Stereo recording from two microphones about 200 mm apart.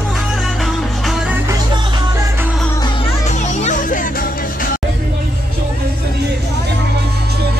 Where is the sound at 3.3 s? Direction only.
35° left (ahead or behind).